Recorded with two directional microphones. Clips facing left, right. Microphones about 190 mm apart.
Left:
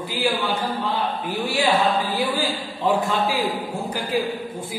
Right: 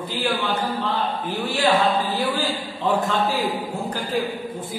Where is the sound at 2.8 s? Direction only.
10° left (ahead or behind).